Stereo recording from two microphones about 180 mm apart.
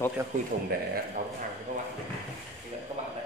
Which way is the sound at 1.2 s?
50° right (ahead or behind).